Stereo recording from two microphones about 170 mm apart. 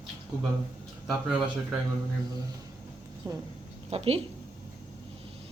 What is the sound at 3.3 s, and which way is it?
Speech, 10° right (ahead or behind).